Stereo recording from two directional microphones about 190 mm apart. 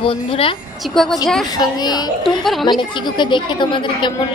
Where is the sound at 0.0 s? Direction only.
30° left (ahead or behind).